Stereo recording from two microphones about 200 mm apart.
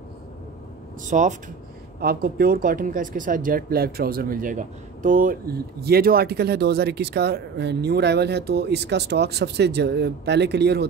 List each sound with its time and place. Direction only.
1.0 s speech: 40° right (ahead or behind)
2.0 s speech: 50° right (ahead or behind)